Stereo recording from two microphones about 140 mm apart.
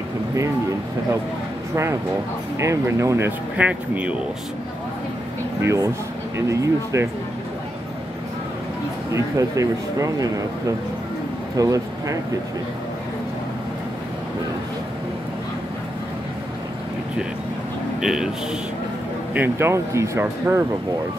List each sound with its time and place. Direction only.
2.6 s speech: 20° right (ahead or behind)
5.6 s speech: 20° right (ahead or behind)
9.1 s speech: 25° right (ahead or behind)
11.5 s speech: 25° right (ahead or behind)
18.0 s speech: 5° right (ahead or behind)
19.3 s speech: 15° right (ahead or behind)